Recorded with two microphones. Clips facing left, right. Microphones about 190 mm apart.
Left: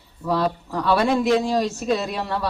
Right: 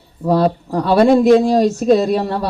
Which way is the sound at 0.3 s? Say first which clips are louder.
Right 7 dB; 40° right (ahead or behind).